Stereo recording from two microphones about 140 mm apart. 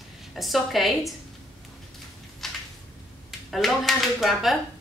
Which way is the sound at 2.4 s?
Centre (ahead or behind).